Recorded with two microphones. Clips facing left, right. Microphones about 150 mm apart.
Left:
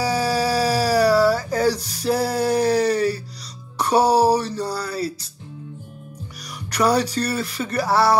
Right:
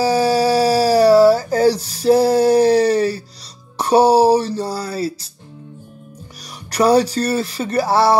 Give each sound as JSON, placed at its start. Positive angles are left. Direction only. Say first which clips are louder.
{"t": 0.0, "sound": "dog", "louder": "right 6 dB", "side_deg": -30}
{"t": 3.7, "sound": "music", "louder": "right 5 dB", "side_deg": -30}
{"t": 6.7, "sound": "speech", "louder": "right 5 dB", "side_deg": -30}